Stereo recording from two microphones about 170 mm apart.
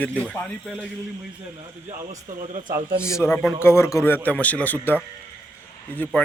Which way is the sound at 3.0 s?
15° left (ahead or behind).